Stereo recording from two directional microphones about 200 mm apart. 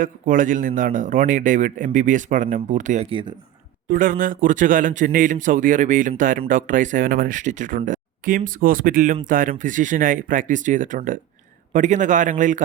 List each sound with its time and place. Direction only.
0.0 s a man's voice: 40° right (ahead or behind)
3.1 s speech: 25° right (ahead or behind)
3.8 s a man's voice: 45° right (ahead or behind)